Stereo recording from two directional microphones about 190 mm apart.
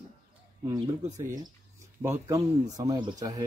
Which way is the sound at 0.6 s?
15° right (ahead or behind).